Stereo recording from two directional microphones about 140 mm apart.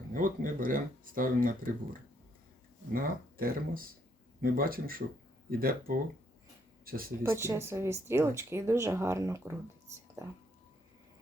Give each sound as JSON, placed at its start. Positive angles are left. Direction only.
{"t": 0.1, "sound": "speech", "side_deg": -75}
{"t": 7.2, "sound": "speech", "side_deg": -15}